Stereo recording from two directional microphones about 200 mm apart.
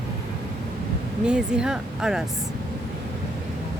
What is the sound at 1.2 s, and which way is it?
Speech, 5° right (ahead or behind).